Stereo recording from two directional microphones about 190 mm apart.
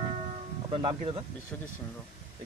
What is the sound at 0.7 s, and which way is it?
Speech, 30° right (ahead or behind).